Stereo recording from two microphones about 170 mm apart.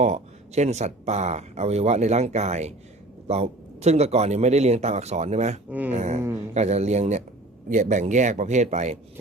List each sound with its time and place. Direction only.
0.0 s speech: 45° right (ahead or behind)